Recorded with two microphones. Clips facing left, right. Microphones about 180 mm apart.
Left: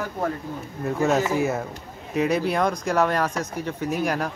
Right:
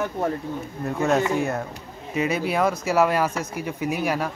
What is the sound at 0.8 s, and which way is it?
Speech, centre (ahead or behind).